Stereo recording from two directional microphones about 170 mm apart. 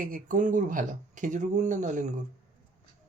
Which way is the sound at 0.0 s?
55° right (ahead or behind).